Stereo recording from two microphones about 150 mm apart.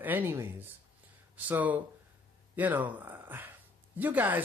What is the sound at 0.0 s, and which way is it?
Speech, 15° right (ahead or behind).